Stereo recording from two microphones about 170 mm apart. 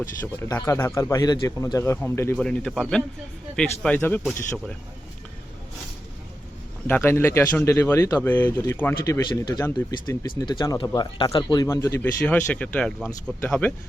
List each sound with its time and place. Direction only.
0.3 s speech: 15° left (ahead or behind)
6.8 s speech: 10° left (ahead or behind)